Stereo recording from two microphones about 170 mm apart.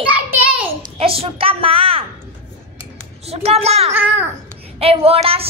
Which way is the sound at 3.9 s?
15° right (ahead or behind).